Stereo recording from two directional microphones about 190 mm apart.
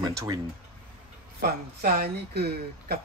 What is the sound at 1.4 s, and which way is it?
Speech, 50° right (ahead or behind).